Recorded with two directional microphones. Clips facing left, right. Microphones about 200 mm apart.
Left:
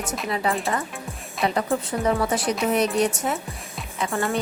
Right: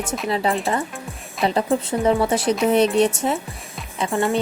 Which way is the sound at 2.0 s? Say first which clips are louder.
Right 4 dB; 30° right (ahead or behind).